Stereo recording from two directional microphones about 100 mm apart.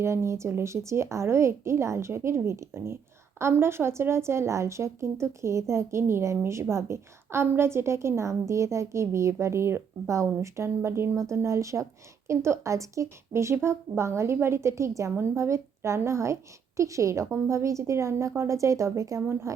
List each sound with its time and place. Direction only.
0.0 s a woman's voice: 25° right (ahead or behind)